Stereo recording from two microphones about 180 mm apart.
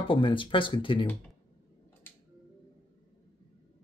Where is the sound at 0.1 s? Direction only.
30° left (ahead or behind).